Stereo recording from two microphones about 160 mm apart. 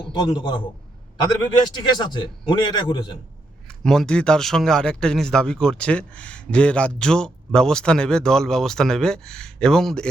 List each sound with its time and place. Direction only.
0.0 s a man's voice: 30° left (ahead or behind)
1.7 s a man's voice: 25° left (ahead or behind)
3.8 s speech: 5° left (ahead or behind)